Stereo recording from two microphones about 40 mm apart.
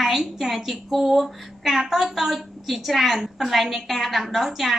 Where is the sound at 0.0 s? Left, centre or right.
Centre.